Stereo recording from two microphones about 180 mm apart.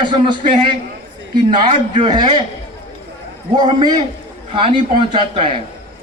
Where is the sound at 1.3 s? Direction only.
25° right (ahead or behind).